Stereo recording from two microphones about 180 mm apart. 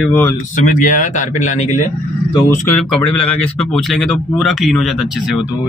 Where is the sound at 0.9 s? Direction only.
45° left (ahead or behind).